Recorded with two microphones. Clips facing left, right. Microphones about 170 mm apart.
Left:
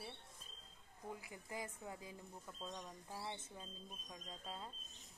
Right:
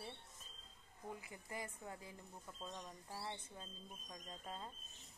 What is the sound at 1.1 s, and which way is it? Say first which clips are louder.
Speech: left 1 dB; 15° left (ahead or behind).